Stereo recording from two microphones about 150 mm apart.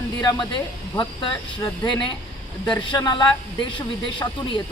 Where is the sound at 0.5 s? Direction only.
30° left (ahead or behind).